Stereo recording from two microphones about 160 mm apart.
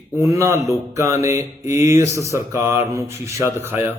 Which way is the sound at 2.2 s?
20° right (ahead or behind).